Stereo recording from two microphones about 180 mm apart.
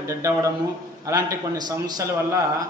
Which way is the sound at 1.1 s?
20° right (ahead or behind).